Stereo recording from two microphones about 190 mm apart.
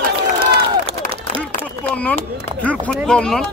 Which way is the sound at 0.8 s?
30° right (ahead or behind).